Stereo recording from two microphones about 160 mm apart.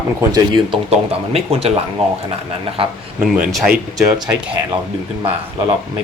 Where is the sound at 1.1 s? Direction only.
40° right (ahead or behind).